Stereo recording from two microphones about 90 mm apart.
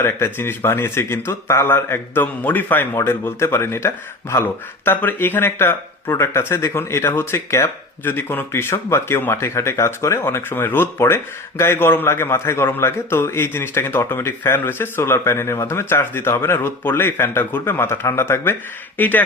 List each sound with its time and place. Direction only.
0.0 s speech: 25° left (ahead or behind)
4.9 s speech: 20° left (ahead or behind)